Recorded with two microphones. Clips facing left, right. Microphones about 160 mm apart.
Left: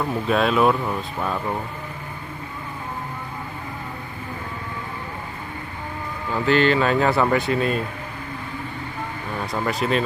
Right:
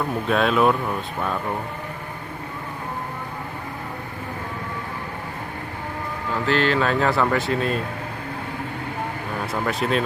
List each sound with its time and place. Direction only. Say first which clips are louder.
0.3 s speech: even; centre (ahead or behind)
6.4 s speech: left 3 dB; centre (ahead or behind)
9.5 s speech: left 1 dB; centre (ahead or behind)